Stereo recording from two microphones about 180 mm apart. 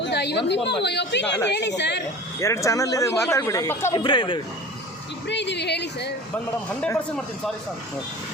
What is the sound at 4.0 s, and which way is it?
Speech, 25° left (ahead or behind).